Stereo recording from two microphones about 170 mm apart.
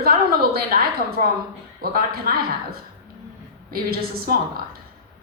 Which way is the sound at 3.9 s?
65° right (ahead or behind).